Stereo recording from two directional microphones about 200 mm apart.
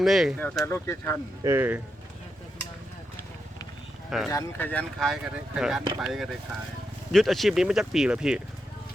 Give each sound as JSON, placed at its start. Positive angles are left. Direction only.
{"t": 0.0, "sound": "speech", "side_deg": 0}
{"t": 1.5, "sound": "speech", "side_deg": -10}
{"t": 4.3, "sound": "speech", "side_deg": 15}